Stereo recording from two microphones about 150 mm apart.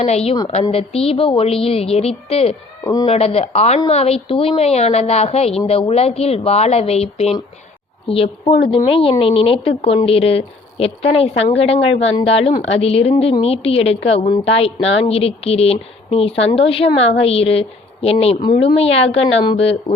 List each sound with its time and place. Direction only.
0.7 s speech: 40° left (ahead or behind)
2.8 s speech: 25° left (ahead or behind)
3.1 s a woman's voice: 40° left (ahead or behind)